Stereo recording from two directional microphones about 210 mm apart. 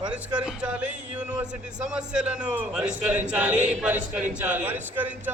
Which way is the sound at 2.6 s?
5° right (ahead or behind).